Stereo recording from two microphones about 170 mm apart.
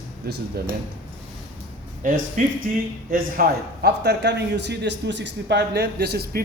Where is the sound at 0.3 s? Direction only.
70° right (ahead or behind).